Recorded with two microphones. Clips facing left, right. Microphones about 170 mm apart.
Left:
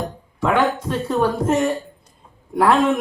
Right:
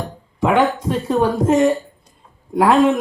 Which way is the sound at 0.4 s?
15° right (ahead or behind).